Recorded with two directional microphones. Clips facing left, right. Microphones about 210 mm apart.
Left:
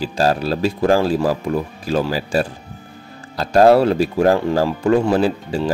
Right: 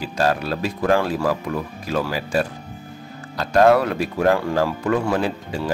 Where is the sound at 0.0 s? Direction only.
30° left (ahead or behind).